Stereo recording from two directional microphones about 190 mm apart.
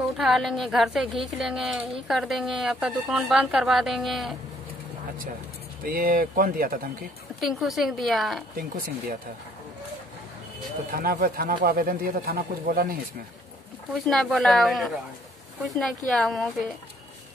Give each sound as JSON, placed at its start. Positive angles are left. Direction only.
{"t": 0.2, "sound": "speech", "side_deg": 0}
{"t": 5.9, "sound": "speech", "side_deg": -50}
{"t": 7.3, "sound": "speech", "side_deg": 0}
{"t": 8.5, "sound": "speech", "side_deg": -50}
{"t": 10.9, "sound": "speech", "side_deg": -50}
{"t": 13.9, "sound": "speech", "side_deg": 0}
{"t": 16.1, "sound": "speech", "side_deg": 0}